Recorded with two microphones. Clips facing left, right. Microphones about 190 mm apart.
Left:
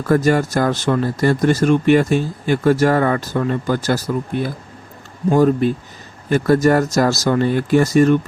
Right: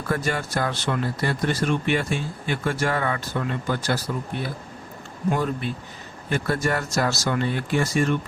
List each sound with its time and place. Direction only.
0.1 s speech: 40° left (ahead or behind)